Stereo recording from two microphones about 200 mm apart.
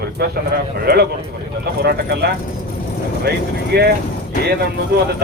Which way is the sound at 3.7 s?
50° right (ahead or behind).